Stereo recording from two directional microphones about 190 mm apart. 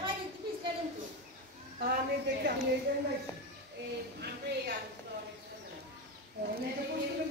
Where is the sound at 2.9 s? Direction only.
60° right (ahead or behind).